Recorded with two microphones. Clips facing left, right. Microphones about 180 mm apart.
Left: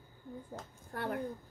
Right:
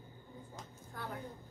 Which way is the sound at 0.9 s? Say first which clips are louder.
Left 8 dB; 65° left (ahead or behind).